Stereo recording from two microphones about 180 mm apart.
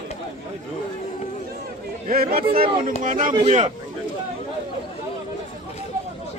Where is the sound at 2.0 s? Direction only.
55° right (ahead or behind); by 3.6 s 35° right (ahead or behind).